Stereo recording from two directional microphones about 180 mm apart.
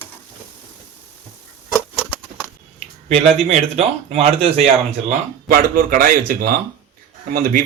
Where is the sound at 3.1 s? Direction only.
35° right (ahead or behind).